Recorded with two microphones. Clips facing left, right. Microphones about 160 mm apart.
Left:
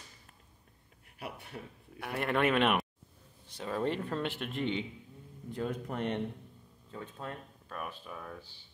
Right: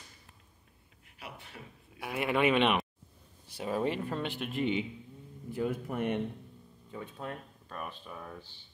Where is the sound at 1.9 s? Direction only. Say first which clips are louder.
Right 1 dB; 5° right (ahead or behind).